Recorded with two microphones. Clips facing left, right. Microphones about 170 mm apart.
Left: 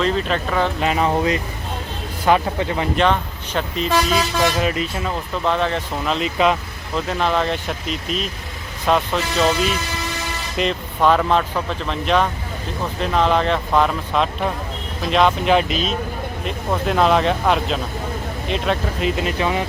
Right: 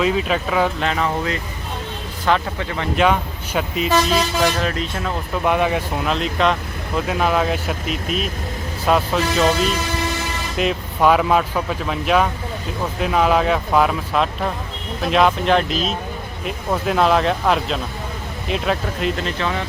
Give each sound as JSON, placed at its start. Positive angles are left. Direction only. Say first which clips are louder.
{"t": 0.0, "sound": "speech", "louder": "right 1 dB", "side_deg": -5}
{"t": 0.9, "sound": "speech", "louder": "left 3 dB", "side_deg": 20}
{"t": 2.9, "sound": "speech", "louder": "right 4 dB", "side_deg": -5}
{"t": 5.5, "sound": "speech", "louder": "right 2 dB", "side_deg": -10}
{"t": 6.1, "sound": "speech", "louder": "left 3 dB", "side_deg": 5}
{"t": 7.1, "sound": "speech", "louder": "right 1 dB", "side_deg": -5}
{"t": 10.6, "sound": "speech", "louder": "right 1 dB", "side_deg": -5}